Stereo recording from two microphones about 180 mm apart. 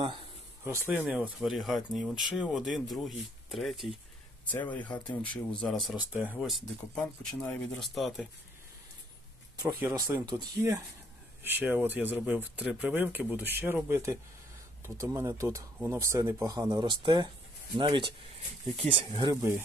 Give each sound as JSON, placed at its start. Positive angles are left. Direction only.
{"t": 0.7, "sound": "speech", "side_deg": -10}
{"t": 9.6, "sound": "speech", "side_deg": -10}
{"t": 19.3, "sound": "speech", "side_deg": -15}